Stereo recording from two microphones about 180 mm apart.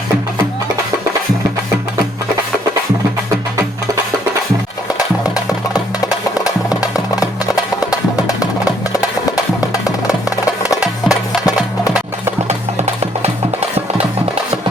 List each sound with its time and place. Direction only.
4.9 s music: 20° left (ahead or behind)
10.2 s music: 20° left (ahead or behind)
12.5 s music: 40° right (ahead or behind)